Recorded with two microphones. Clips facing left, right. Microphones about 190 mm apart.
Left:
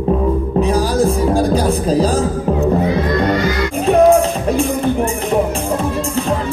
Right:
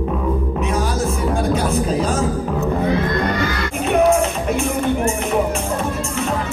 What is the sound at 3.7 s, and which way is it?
Music, 35° left (ahead or behind).